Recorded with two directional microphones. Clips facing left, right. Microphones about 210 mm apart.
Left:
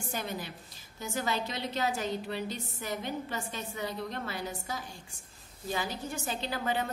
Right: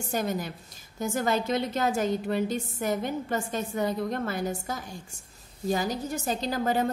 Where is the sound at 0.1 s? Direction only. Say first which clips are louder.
Right 8 dB; 45° right (ahead or behind).